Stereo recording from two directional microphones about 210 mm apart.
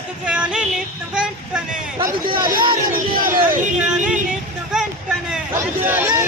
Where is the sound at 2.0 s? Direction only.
20° right (ahead or behind).